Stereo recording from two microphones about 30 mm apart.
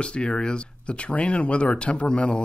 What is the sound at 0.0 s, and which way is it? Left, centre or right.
Speech, left.